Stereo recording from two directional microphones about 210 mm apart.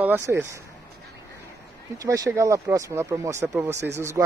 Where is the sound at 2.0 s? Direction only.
15° right (ahead or behind).